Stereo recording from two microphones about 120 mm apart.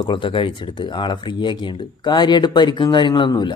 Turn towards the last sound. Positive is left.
turn(degrees=40)  # may be behind; listen again after turning